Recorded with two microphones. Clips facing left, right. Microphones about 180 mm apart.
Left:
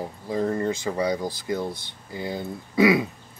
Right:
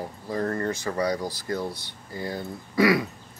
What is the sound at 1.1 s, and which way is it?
Speech, 20° left (ahead or behind).